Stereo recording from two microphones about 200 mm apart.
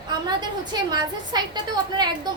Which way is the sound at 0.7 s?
20° right (ahead or behind).